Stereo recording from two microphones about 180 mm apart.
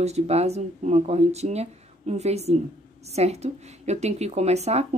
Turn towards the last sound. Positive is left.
turn(degrees=-35)  # may be behind; listen again after turning